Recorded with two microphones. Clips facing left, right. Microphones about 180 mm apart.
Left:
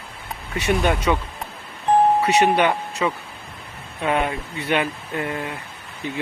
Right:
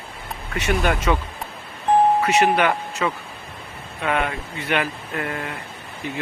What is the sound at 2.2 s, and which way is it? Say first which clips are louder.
Speech: left 1 dB; 35° left (ahead or behind).